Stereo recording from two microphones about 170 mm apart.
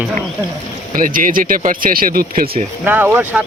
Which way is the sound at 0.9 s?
55° right (ahead or behind).